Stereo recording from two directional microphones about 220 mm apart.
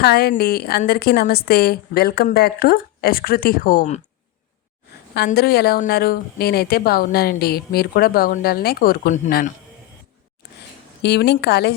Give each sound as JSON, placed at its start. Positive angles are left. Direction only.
{"t": 0.0, "sound": "a woman's voice", "side_deg": 45}
{"t": 5.1, "sound": "a woman's voice", "side_deg": 45}
{"t": 11.0, "sound": "a woman's voice", "side_deg": 50}